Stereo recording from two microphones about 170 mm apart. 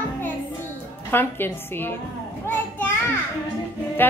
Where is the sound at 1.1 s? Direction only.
10° left (ahead or behind).